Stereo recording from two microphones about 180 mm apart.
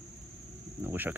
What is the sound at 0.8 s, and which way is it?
Speech, 10° right (ahead or behind).